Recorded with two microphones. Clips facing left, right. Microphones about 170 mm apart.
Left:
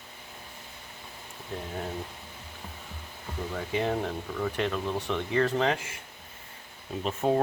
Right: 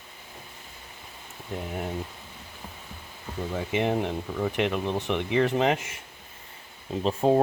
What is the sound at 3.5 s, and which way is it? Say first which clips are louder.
Speech: right 3 dB; 20° right (ahead or behind).